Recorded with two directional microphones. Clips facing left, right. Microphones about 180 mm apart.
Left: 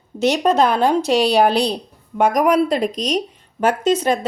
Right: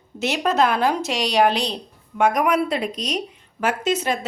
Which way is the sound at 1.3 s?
35° left (ahead or behind).